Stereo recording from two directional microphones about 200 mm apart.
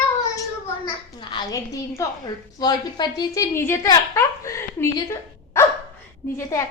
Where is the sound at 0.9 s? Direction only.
25° left (ahead or behind).